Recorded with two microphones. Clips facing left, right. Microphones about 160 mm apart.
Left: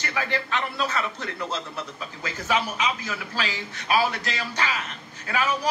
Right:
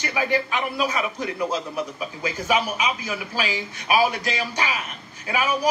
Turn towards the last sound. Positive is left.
turn(degrees=-10)  # may be behind; listen again after turning